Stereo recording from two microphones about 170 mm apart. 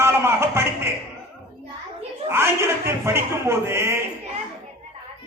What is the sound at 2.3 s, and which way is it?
A man's voice, 15° right (ahead or behind).